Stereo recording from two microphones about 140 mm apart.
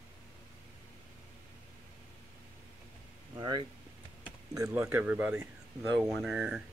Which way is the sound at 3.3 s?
30° right (ahead or behind).